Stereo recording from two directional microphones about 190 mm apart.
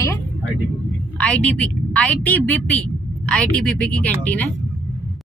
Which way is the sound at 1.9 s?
5° left (ahead or behind).